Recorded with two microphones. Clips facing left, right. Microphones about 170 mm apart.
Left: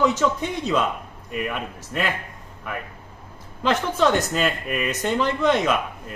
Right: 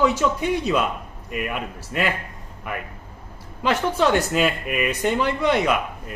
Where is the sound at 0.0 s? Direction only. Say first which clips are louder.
Right 1 dB; 10° right (ahead or behind).